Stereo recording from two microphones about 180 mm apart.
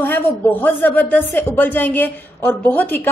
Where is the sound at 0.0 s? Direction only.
10° left (ahead or behind).